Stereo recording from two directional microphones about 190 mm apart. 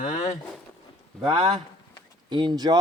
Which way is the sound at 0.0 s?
40° left (ahead or behind).